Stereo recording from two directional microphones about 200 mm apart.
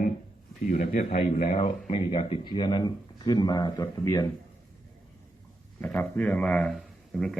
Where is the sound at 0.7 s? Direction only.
35° left (ahead or behind); by 4.3 s 15° left (ahead or behind).